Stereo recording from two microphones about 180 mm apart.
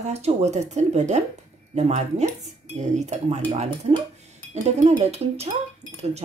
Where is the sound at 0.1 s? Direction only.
35° right (ahead or behind).